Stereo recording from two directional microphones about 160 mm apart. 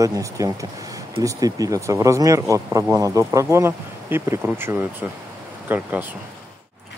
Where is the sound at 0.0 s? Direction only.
20° right (ahead or behind).